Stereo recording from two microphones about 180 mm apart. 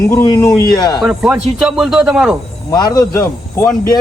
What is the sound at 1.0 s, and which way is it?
Speech, 5° right (ahead or behind).